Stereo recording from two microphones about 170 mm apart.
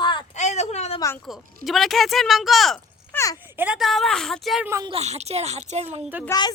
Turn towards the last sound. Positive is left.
turn(degrees=15)  # may be behind; listen again after turning